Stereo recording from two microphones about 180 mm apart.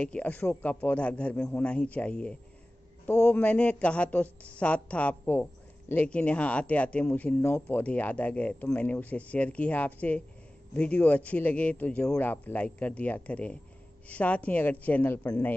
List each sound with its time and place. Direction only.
0.0 s speech: 5° left (ahead or behind)